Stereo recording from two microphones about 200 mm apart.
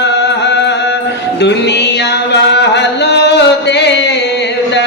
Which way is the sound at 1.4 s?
60° left (ahead or behind).